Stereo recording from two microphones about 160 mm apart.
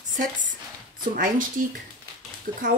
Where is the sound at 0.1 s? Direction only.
55° right (ahead or behind).